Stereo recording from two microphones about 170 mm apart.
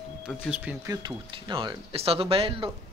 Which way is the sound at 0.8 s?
30° right (ahead or behind).